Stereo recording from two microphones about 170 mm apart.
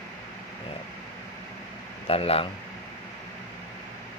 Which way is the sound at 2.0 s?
35° left (ahead or behind).